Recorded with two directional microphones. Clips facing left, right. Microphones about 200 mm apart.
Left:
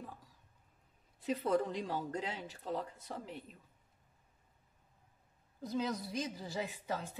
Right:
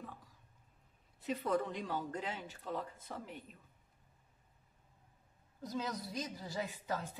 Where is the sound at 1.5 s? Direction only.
40° left (ahead or behind).